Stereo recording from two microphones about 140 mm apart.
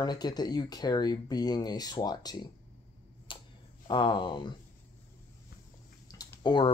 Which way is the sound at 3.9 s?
35° left (ahead or behind).